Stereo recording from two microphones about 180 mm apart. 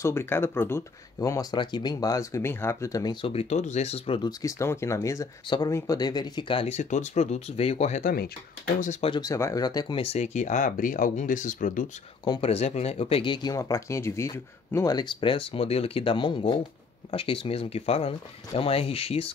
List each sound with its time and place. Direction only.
0.0 s speech: 15° left (ahead or behind); by 8.1 s 40° left (ahead or behind)
9.0 s speech: 25° left (ahead or behind); by 11.8 s 45° left (ahead or behind)
12.3 s speech: 35° left (ahead or behind)